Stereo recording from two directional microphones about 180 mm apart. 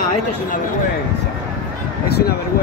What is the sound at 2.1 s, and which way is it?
Speech, 60° left (ahead or behind).